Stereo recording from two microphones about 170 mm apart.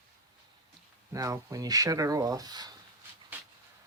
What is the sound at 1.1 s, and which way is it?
Speech, 20° right (ahead or behind).